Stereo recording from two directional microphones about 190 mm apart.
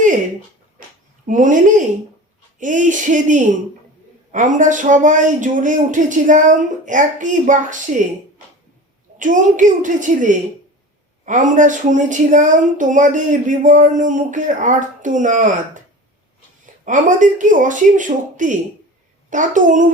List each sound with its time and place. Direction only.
1.3 s a woman's voice: 40° right (ahead or behind)
2.6 s speech: 40° right (ahead or behind)
9.1 s a woman's voice: 40° right (ahead or behind)
16.8 s speech: 40° right (ahead or behind)